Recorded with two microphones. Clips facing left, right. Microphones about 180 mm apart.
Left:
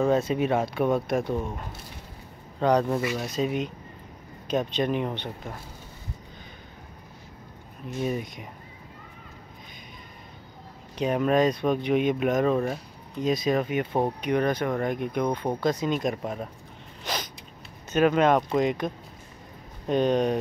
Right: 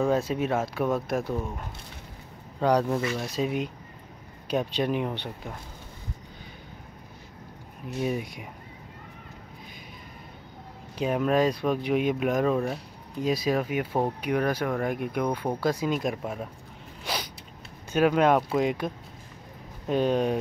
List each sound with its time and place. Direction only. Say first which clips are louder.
0.1 s speech: left 2 dB; 5° right (ahead or behind)
2.6 s speech: left 1 dB; 10° right (ahead or behind)
2.9 s speech: left 1 dB; 5° left (ahead or behind)
3.3 s speech: left 1 dB; 5° right (ahead or behind)
8.0 s speech: even; 5° right (ahead or behind)
11.0 s speech: left 1 dB; 5° right (ahead or behind)
17.0 s a sound: even; 10° right (ahead or behind)
17.9 s speech: left 1 dB; 10° right (ahead or behind)
19.9 s speech: left 1 dB; 5° right (ahead or behind)